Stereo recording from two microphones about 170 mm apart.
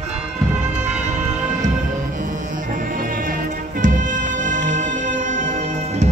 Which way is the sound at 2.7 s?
55° right (ahead or behind).